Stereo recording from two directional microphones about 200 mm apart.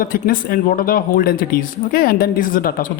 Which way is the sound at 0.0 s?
45° left (ahead or behind).